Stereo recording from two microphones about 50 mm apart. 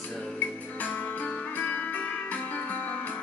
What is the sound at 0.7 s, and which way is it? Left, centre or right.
Music, left.